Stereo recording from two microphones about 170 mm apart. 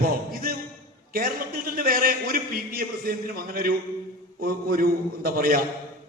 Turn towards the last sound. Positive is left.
turn(degrees=-60)  # may be behind; listen again after turning